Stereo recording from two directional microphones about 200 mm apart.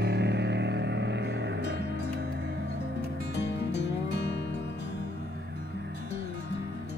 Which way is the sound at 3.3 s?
60° left (ahead or behind).